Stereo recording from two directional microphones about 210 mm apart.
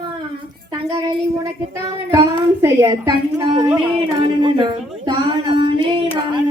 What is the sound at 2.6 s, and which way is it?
A woman's voice, 10° right (ahead or behind).